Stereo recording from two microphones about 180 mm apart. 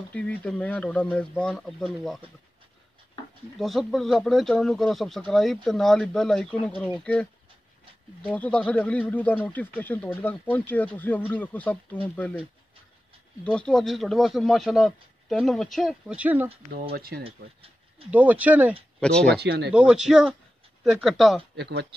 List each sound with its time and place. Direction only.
0.1 s speech: 5° left (ahead or behind)
3.5 s speech: centre (ahead or behind)
8.4 s speech: 5° left (ahead or behind)
13.4 s speech: 5° left (ahead or behind)
16.9 s speech: 60° right (ahead or behind)
17.2 s speech: 30° right (ahead or behind)
18.1 s speech: 10° right (ahead or behind)
18.9 s speech: 5° left (ahead or behind)
19.4 s speech: 65° right (ahead or behind)
19.7 s speech: 5° right (ahead or behind)
21.5 s speech: 70° right (ahead or behind)